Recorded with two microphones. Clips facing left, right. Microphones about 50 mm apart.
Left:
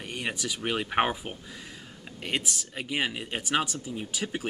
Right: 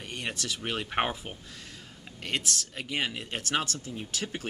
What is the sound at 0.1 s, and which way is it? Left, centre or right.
Speech, centre.